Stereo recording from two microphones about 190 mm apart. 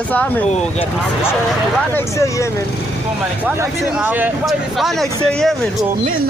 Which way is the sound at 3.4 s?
10° right (ahead or behind).